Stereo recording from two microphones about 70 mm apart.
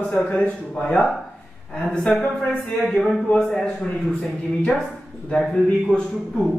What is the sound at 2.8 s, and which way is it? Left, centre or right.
A man's voice, centre.